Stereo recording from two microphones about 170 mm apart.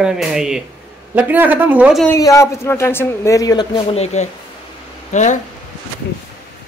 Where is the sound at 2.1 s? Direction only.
20° left (ahead or behind).